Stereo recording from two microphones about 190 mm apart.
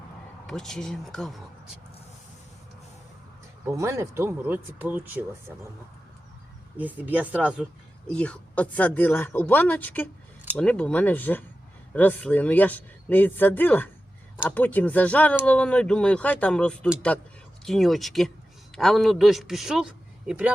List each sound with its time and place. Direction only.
0.4 s a man's voice: centre (ahead or behind)
3.7 s speech: 15° right (ahead or behind)
6.7 s a man's voice: 10° right (ahead or behind)